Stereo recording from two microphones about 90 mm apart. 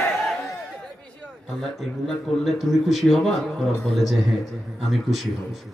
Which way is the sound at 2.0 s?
Centre (ahead or behind).